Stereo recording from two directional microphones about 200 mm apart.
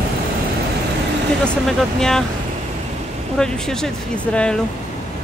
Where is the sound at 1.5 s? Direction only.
Centre (ahead or behind).